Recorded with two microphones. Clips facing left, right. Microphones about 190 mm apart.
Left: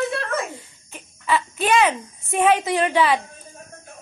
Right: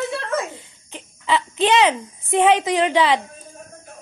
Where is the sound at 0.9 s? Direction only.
20° right (ahead or behind).